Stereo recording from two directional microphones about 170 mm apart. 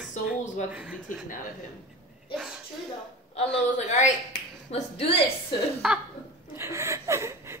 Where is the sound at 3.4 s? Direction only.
40° left (ahead or behind).